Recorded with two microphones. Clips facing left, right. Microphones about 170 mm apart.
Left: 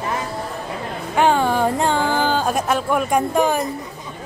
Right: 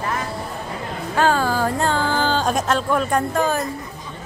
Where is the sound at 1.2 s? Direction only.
20° left (ahead or behind).